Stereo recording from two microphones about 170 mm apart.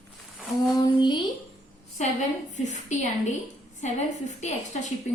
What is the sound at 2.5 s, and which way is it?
A woman's voice, 45° left (ahead or behind).